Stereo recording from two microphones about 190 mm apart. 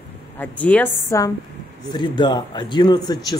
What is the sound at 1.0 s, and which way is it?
A man's voice, 20° left (ahead or behind).